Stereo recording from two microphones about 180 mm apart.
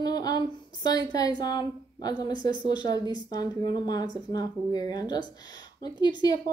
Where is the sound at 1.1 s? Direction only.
20° left (ahead or behind).